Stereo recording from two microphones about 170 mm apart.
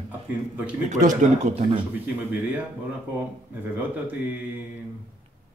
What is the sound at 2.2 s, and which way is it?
Speech, 10° right (ahead or behind).